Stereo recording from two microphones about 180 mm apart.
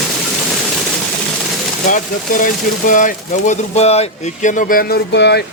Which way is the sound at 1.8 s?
45° left (ahead or behind).